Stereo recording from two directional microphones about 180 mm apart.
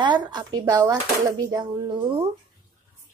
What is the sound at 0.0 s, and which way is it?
Speech, 25° right (ahead or behind).